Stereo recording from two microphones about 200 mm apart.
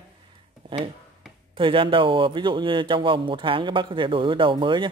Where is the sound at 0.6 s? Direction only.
25° right (ahead or behind).